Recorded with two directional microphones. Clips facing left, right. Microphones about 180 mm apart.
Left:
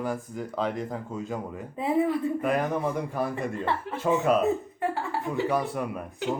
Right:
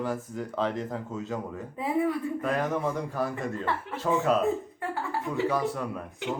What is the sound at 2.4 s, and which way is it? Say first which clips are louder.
A man's voice: left 2 dB; 15° left (ahead or behind).